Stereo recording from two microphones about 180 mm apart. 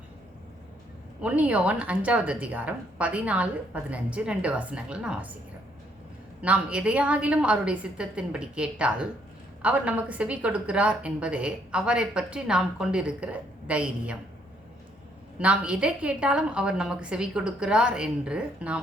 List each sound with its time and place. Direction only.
1.2 s a woman's voice: 5° right (ahead or behind)
6.4 s a woman's voice: 5° right (ahead or behind)
15.4 s a woman's voice: 5° right (ahead or behind)